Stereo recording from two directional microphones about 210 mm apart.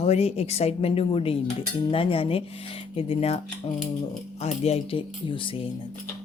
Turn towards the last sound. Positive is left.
turn(degrees=25)  # may be behind; listen again after turning